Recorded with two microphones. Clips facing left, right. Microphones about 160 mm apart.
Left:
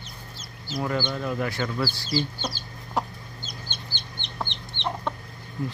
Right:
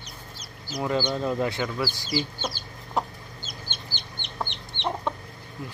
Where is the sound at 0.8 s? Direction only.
15° right (ahead or behind).